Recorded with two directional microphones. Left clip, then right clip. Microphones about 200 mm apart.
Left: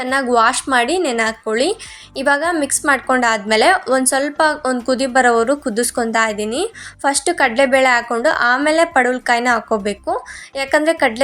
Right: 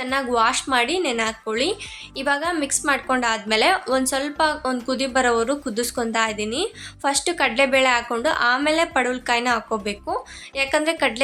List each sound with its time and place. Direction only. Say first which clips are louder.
0.0 s a woman's voice: left 6 dB; 25° left (ahead or behind)